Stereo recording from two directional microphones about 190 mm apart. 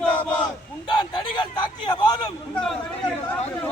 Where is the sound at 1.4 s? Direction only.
25° left (ahead or behind).